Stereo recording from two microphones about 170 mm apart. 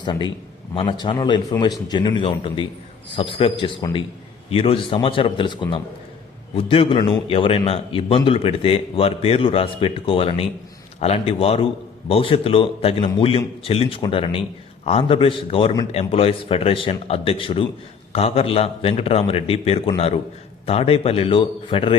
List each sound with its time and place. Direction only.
0.0 s a man's voice: 25° left (ahead or behind)